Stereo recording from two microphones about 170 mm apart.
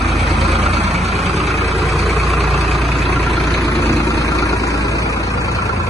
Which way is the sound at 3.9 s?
20° left (ahead or behind).